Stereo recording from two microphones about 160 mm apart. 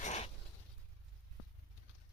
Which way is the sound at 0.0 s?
45° left (ahead or behind).